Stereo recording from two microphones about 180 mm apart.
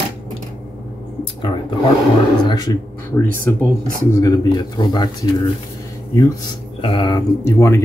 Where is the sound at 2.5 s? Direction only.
25° left (ahead or behind).